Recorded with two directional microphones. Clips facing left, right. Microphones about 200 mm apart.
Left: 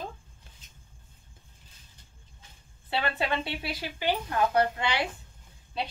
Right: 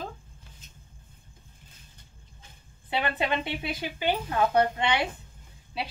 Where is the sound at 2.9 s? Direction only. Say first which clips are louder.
Right 1 dB; 20° right (ahead or behind).